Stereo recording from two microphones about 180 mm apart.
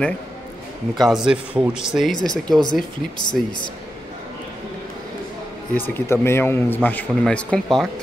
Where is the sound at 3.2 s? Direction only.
25° left (ahead or behind).